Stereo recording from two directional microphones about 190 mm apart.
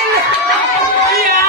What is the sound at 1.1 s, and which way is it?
Music, 50° right (ahead or behind).